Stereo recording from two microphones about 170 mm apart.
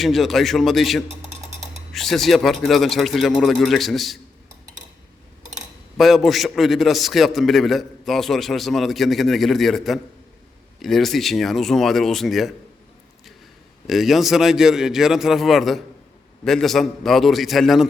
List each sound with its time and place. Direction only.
0.0 s a man's voice: centre (ahead or behind)
6.0 s a man's voice: centre (ahead or behind)
13.8 s a man's voice: centre (ahead or behind)